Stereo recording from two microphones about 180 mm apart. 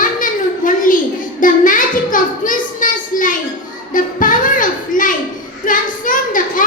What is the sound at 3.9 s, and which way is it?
Music, 50° left (ahead or behind).